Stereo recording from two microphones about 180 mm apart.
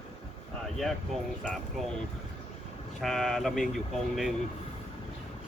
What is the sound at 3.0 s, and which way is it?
Speech, centre (ahead or behind).